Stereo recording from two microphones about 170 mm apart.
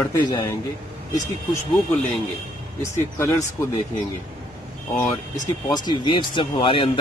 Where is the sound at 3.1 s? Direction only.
20° left (ahead or behind).